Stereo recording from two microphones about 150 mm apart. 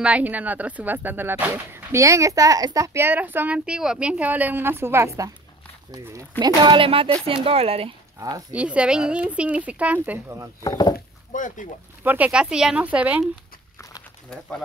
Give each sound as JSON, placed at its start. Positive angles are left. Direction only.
{"t": 0.0, "sound": "speech", "side_deg": -10}
{"t": 6.4, "sound": "speech", "side_deg": -30}
{"t": 8.2, "sound": "speech", "side_deg": -25}
{"t": 8.5, "sound": "speech", "side_deg": -10}
{"t": 10.6, "sound": "speech", "side_deg": 25}
{"t": 11.3, "sound": "speech", "side_deg": 60}
{"t": 12.0, "sound": "speech", "side_deg": -10}